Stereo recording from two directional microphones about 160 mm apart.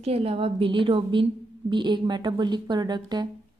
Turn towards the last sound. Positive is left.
turn(degrees=-25)  # may be behind; listen again after turning